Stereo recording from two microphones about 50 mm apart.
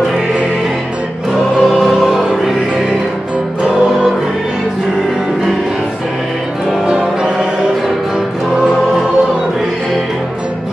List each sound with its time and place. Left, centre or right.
1.6 s music: centre
6.9 s music: centre